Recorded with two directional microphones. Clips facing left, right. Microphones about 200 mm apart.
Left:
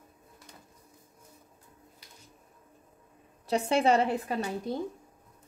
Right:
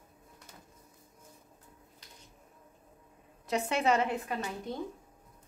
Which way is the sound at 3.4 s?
30° left (ahead or behind).